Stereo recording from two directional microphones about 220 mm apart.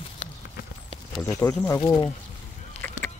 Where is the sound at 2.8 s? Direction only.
10° left (ahead or behind).